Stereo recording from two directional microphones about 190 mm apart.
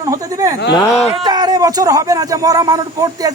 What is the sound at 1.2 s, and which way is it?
Speech, 20° right (ahead or behind).